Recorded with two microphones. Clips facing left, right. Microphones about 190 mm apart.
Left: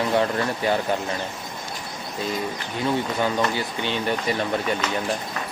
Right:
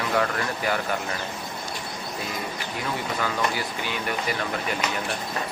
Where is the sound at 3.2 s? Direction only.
25° left (ahead or behind).